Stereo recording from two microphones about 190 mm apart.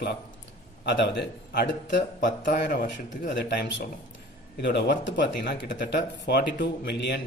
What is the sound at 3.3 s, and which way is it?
Speech, 65° left (ahead or behind).